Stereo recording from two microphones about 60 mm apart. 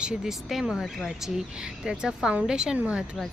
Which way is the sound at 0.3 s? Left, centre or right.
Centre.